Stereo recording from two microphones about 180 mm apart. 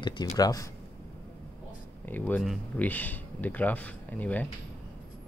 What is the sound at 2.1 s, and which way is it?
Speech, 10° left (ahead or behind).